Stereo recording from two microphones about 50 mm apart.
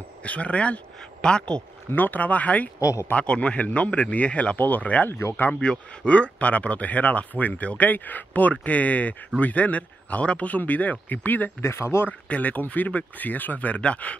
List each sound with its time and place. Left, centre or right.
0.2 s speech: left
2.0 s speech: left
2.8 s speech: left
3.1 s speech: left
11.6 s speech: left
12.1 s speech: left